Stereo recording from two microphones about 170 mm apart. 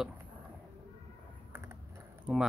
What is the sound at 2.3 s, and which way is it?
Pig, 5° right (ahead or behind).